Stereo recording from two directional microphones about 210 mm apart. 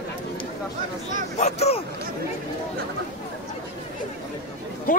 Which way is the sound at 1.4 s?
30° left (ahead or behind).